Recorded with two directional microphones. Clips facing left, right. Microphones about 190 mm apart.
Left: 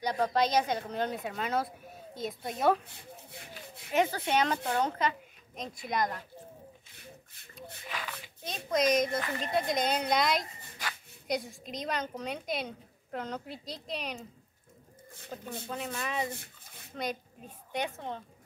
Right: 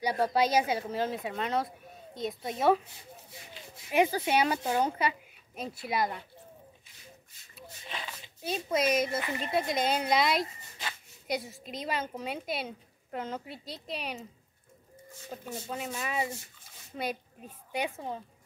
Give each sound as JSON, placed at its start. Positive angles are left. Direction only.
{"t": 0.0, "sound": "a woman's voice", "side_deg": -10}
{"t": 2.8, "sound": "speech", "side_deg": 60}
{"t": 3.9, "sound": "speech", "side_deg": -10}
{"t": 7.8, "sound": "a sound", "side_deg": -25}
{"t": 8.4, "sound": "a woman's voice", "side_deg": -5}
{"t": 15.3, "sound": "a woman's voice", "side_deg": -5}
{"t": 16.3, "sound": "rub", "side_deg": 60}
{"t": 16.9, "sound": "a woman's voice", "side_deg": -5}